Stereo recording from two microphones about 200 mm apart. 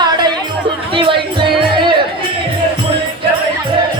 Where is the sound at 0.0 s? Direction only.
20° right (ahead or behind).